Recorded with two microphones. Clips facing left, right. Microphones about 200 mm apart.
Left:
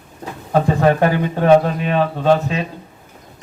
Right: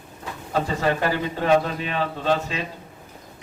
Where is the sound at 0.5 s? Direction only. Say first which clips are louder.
Left 8 dB; 55° left (ahead or behind).